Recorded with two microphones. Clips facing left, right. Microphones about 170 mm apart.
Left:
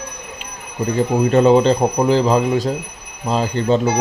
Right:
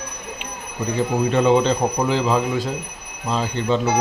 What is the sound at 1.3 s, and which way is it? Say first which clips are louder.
Speech: left 5 dB; 40° left (ahead or behind).